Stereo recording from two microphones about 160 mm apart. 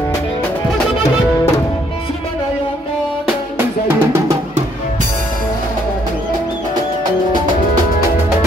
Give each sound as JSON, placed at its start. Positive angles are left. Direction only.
{"t": 3.5, "sound": "drum", "side_deg": -15}